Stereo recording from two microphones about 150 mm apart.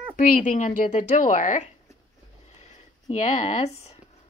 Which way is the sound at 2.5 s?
45° left (ahead or behind).